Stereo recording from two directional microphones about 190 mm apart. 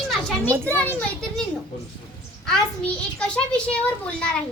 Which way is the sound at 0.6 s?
10° left (ahead or behind).